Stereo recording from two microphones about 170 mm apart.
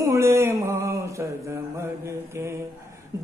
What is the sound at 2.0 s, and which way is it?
Mantra, 15° right (ahead or behind).